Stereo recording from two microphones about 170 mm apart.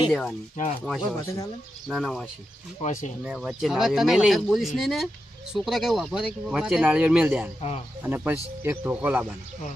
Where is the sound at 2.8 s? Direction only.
50° left (ahead or behind).